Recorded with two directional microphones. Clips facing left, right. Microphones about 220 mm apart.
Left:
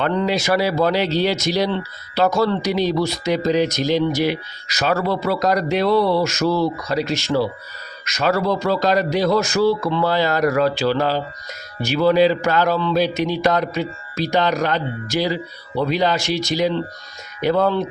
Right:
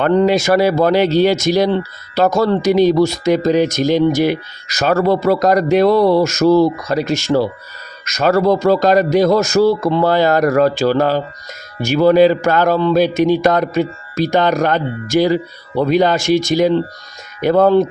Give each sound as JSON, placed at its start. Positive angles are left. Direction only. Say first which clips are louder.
{"t": 0.0, "sound": "speech", "louder": "right 7 dB", "side_deg": -50}